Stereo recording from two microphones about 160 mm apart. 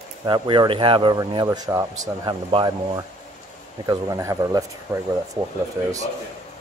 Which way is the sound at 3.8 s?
20° right (ahead or behind).